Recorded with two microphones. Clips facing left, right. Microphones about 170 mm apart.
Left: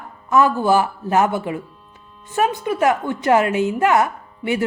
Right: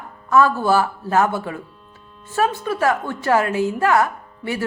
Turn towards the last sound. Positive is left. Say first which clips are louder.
# left 4 dB
turn(degrees=20)  # may be behind; listen again after turning